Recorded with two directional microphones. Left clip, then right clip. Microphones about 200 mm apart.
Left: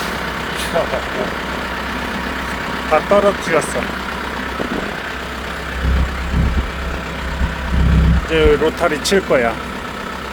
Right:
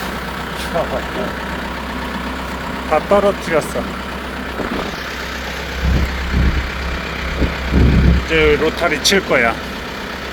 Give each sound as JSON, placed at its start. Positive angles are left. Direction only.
{"t": 2.9, "sound": "speech", "side_deg": 0}
{"t": 8.3, "sound": "speech", "side_deg": 10}